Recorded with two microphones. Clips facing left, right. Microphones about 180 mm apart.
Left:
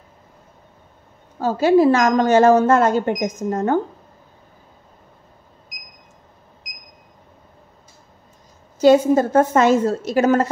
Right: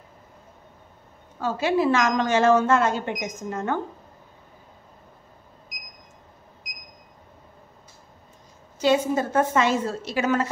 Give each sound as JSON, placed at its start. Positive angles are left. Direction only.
{"t": 1.4, "sound": "speech", "side_deg": 40}
{"t": 8.7, "sound": "speech", "side_deg": 40}